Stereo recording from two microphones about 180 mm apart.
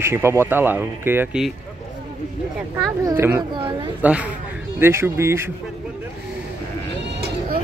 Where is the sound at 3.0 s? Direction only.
15° right (ahead or behind).